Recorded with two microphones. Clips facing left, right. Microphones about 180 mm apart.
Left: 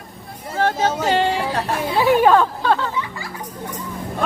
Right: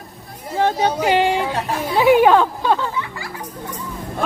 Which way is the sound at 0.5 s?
15° right (ahead or behind).